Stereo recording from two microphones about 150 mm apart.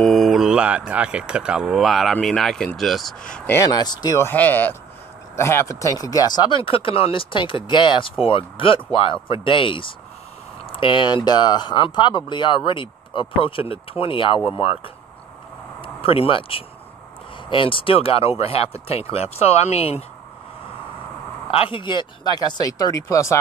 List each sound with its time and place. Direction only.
0.0 s a man's voice: centre (ahead or behind)
3.5 s speech: 25° left (ahead or behind)
4.3 s speech: 10° left (ahead or behind); by 14.7 s 35° left (ahead or behind)
15.8 s speech: 40° left (ahead or behind)
21.5 s speech: 35° left (ahead or behind); by 23.4 s 20° left (ahead or behind)